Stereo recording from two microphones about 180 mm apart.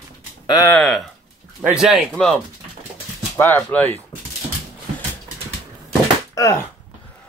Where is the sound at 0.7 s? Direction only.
Centre (ahead or behind).